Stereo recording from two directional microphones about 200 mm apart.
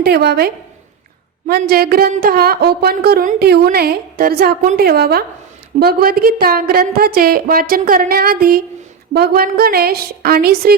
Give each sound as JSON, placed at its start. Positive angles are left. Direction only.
{"t": 0.0, "sound": "speech", "side_deg": -55}